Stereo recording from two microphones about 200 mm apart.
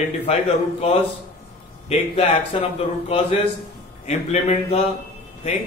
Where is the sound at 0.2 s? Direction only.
30° left (ahead or behind).